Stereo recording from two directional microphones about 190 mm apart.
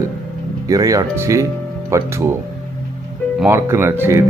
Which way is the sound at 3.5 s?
15° right (ahead or behind).